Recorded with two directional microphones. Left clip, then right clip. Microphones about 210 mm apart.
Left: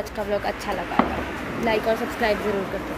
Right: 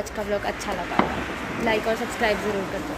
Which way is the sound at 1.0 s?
45° right (ahead or behind).